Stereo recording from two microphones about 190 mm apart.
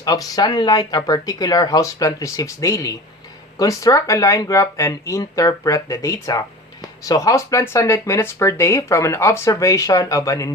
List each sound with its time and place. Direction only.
0.0 s speech: 20° left (ahead or behind)